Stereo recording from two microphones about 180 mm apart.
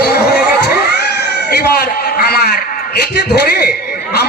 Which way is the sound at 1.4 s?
65° left (ahead or behind).